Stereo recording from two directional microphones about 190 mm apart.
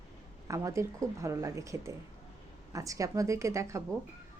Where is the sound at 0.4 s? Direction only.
15° right (ahead or behind).